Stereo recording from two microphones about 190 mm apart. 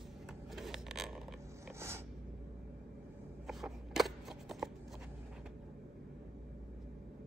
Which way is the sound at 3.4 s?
Centre (ahead or behind).